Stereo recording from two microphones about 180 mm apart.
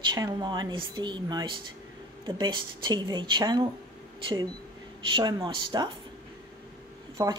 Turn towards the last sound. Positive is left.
turn(degrees=-15)  # may be behind; listen again after turning